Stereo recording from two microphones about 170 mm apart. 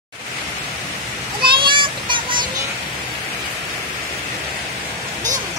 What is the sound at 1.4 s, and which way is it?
Child singing, 30° right (ahead or behind).